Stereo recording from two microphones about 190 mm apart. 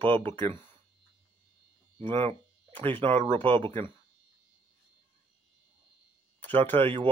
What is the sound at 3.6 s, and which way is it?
Speech, 10° left (ahead or behind).